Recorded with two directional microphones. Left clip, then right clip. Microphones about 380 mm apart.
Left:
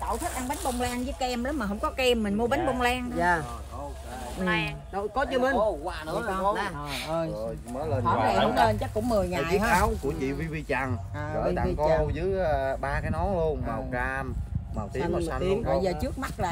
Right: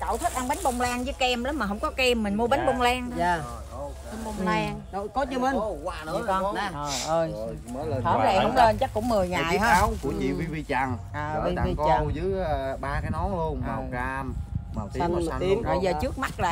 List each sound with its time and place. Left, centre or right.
0.1 s speech: right
0.8 s speech: centre
4.5 s speech: centre
4.9 s speech: centre
6.9 s speech: centre
7.2 s speech: centre